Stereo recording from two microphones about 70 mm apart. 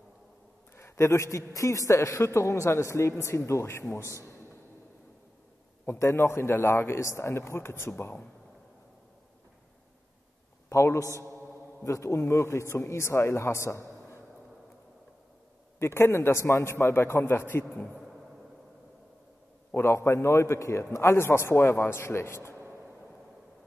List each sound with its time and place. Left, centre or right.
0.7 s a man's voice: left
5.9 s a man's voice: left
10.7 s a man's voice: left
11.1 s a man's voice: right
11.8 s a man's voice: left
15.8 s a man's voice: left
19.7 s a man's voice: left